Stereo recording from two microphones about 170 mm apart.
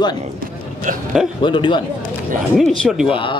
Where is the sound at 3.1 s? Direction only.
30° left (ahead or behind).